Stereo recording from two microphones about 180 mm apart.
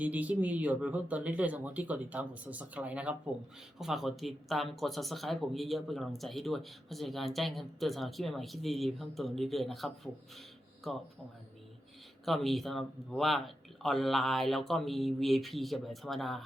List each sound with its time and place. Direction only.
0.0 s speech: 10° right (ahead or behind)
12.2 s speech: centre (ahead or behind)